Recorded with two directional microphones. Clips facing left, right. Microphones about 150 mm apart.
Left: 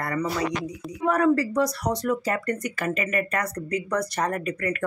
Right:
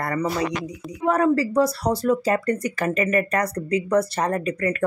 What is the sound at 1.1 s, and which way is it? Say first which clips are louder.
Speech: right 2 dB; 25° right (ahead or behind).